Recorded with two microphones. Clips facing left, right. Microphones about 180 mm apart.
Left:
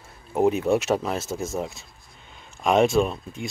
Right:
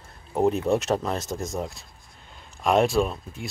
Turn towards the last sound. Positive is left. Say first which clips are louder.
# left 2 dB
turn(degrees=0)  # may be behind; listen again after turning